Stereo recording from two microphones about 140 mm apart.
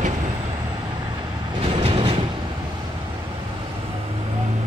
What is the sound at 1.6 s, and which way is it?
Train, 40° right (ahead or behind).